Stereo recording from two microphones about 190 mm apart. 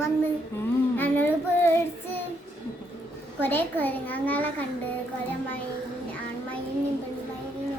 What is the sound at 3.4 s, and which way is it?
A woman's voice, 10° left (ahead or behind).